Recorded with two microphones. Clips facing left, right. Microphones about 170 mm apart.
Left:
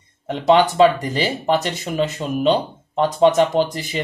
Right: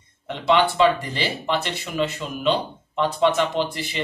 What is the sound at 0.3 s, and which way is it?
Speech, 40° left (ahead or behind).